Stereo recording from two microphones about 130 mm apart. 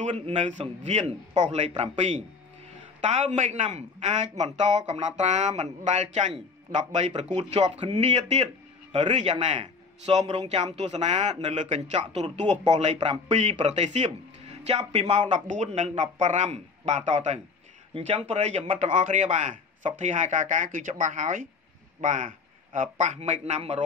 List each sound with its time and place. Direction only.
0.0 s a man's voice: 65° right (ahead or behind)
17.9 s a man's voice: 50° right (ahead or behind)